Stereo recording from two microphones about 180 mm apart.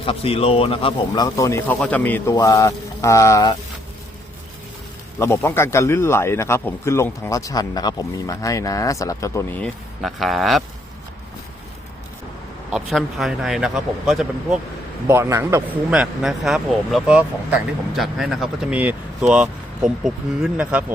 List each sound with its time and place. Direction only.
0.0 s speech: 30° left (ahead or behind)
5.2 s speech: 15° left (ahead or behind)
10.0 s speech: centre (ahead or behind)
12.7 s speech: centre (ahead or behind)
15.0 s a man's voice: 15° right (ahead or behind)
15.9 s speech: 5° right (ahead or behind)